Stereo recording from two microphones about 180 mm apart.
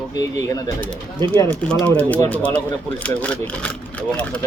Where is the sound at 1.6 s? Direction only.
5° left (ahead or behind).